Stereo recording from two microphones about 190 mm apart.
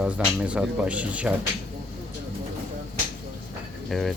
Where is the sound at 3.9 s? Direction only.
Centre (ahead or behind).